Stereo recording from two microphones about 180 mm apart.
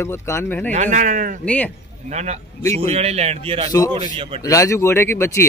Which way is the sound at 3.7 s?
15° left (ahead or behind).